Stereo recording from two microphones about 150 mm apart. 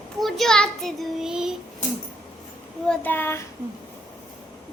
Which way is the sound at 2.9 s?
10° left (ahead or behind).